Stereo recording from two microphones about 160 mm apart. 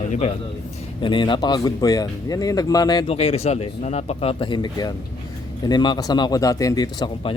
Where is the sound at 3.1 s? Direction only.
40° left (ahead or behind).